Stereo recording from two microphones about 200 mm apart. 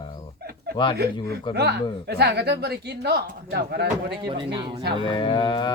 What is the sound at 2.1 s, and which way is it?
Speech, 55° right (ahead or behind).